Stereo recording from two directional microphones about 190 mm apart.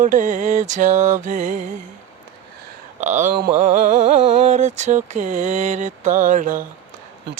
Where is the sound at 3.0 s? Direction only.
40° right (ahead or behind).